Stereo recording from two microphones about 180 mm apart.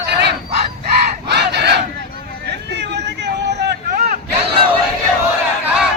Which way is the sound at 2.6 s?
70° right (ahead or behind).